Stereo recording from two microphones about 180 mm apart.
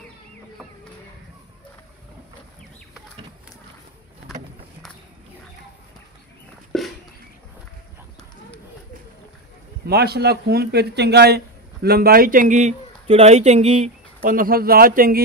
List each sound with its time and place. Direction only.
6.7 s a sound: centre (ahead or behind)
9.8 s speech: 60° right (ahead or behind); by 13.8 s 35° right (ahead or behind)
14.2 s speech: 50° right (ahead or behind)